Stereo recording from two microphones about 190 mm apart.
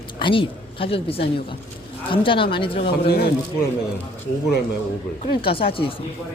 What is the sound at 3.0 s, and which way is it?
Speech, 60° left (ahead or behind).